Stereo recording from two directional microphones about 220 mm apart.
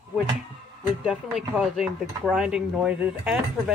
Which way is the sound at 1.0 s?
5° right (ahead or behind).